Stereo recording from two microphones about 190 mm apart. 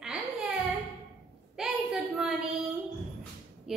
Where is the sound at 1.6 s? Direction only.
Centre (ahead or behind).